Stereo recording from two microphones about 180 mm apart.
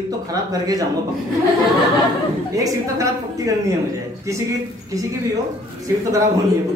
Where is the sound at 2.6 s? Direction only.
20° right (ahead or behind).